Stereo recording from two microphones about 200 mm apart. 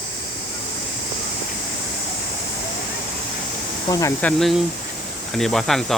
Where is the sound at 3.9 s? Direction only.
15° left (ahead or behind).